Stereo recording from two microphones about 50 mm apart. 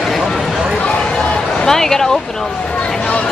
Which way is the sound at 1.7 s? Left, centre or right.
Centre.